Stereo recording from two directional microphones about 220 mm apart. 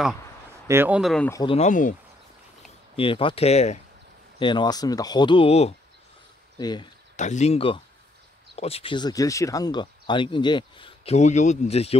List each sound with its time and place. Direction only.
0.7 s speech: 10° right (ahead or behind)
1.3 s speech: 20° left (ahead or behind)
3.0 s speech: 25° left (ahead or behind)
7.2 s speech: 30° left (ahead or behind)